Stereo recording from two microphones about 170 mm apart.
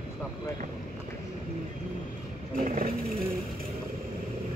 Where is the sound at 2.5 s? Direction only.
55° right (ahead or behind).